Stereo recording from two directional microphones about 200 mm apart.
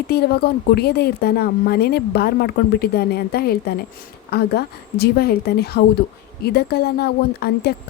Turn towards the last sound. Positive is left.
turn(degrees=55)  # may be behind; listen again after turning